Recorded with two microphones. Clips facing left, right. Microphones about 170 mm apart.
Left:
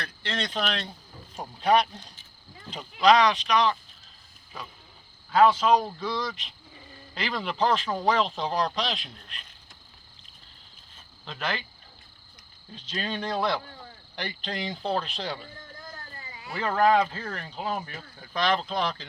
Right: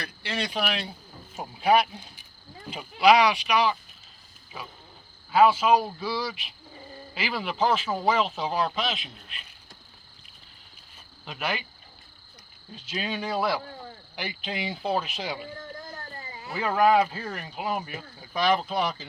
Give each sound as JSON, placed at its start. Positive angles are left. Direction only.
{"t": 0.0, "sound": "speech", "side_deg": -10}
{"t": 11.3, "sound": "speech", "side_deg": -10}
{"t": 12.7, "sound": "speech", "side_deg": -10}
{"t": 16.1, "sound": "cat", "side_deg": -40}
{"t": 16.5, "sound": "speech", "side_deg": -10}